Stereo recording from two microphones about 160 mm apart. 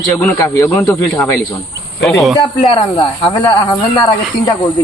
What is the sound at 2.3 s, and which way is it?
Speech, 35° left (ahead or behind).